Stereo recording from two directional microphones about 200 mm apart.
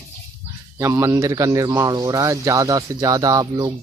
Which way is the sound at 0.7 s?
15° right (ahead or behind).